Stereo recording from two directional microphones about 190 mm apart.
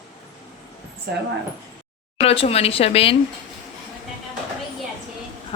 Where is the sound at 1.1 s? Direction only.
55° right (ahead or behind).